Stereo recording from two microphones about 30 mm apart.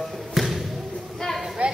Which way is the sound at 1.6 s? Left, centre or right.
Right.